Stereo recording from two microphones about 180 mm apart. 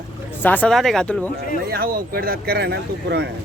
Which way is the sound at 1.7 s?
55° right (ahead or behind).